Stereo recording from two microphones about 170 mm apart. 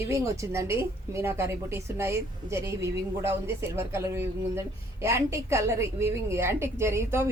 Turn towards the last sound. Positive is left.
turn(degrees=-15)  # may be behind; listen again after turning